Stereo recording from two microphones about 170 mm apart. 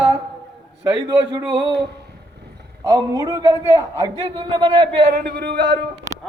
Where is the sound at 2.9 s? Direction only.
20° right (ahead or behind).